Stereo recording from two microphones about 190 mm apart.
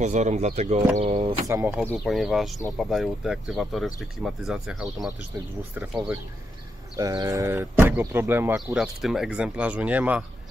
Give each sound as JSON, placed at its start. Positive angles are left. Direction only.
{"t": 0.0, "sound": "speech", "side_deg": -40}
{"t": 1.5, "sound": "speech", "side_deg": -10}
{"t": 1.9, "sound": "speech", "side_deg": 0}
{"t": 7.0, "sound": "speech", "side_deg": -20}